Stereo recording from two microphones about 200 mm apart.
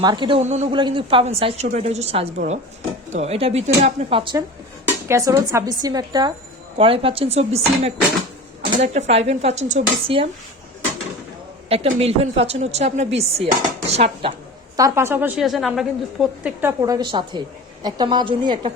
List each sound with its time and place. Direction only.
0.0 s a woman's voice: 20° right (ahead or behind)
5.0 s a woman's voice: 15° right (ahead or behind); by 10.2 s 30° right (ahead or behind)
11.7 s speech: 30° right (ahead or behind)
14.8 s a woman's voice: 15° right (ahead or behind)